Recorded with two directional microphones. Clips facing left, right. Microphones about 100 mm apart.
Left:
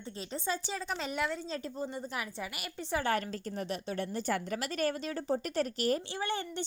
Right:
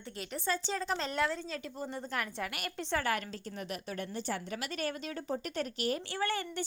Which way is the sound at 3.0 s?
35° left (ahead or behind).